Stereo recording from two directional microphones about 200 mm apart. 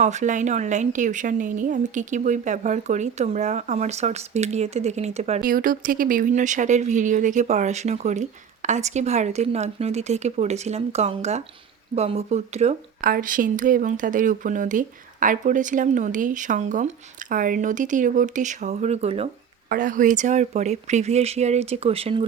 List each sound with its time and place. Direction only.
0.0 s speech: 35° right (ahead or behind)
5.4 s speech: 45° right (ahead or behind)